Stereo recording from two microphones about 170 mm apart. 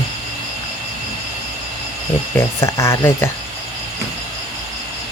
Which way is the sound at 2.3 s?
15° left (ahead or behind).